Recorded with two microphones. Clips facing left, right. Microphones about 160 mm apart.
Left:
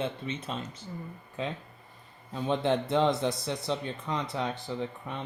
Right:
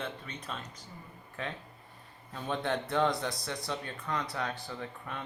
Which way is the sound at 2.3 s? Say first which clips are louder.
Left 6 dB; 20° left (ahead or behind).